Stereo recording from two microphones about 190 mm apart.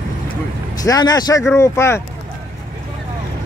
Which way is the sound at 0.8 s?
20° left (ahead or behind).